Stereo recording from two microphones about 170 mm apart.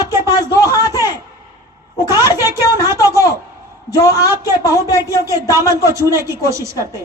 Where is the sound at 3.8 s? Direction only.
20° left (ahead or behind).